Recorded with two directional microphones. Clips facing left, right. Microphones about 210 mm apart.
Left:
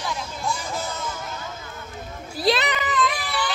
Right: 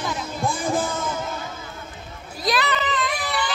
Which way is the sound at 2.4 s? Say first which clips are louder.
Left 2 dB; 25° left (ahead or behind).